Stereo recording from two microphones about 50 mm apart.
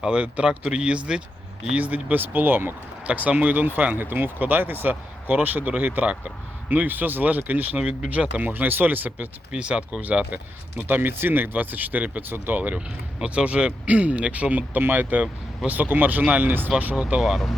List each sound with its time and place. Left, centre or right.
0.0 s speech: right
1.7 s speech: right
3.1 s speech: right
9.5 s speech: right
10.3 s speech: right
14.5 s speech: right
17.2 s speech: centre